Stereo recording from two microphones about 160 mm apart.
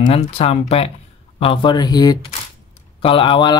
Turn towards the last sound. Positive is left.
turn(degrees=30)  # may be behind; listen again after turning